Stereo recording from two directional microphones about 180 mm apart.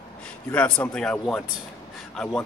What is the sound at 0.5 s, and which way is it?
Speech, 5° left (ahead or behind).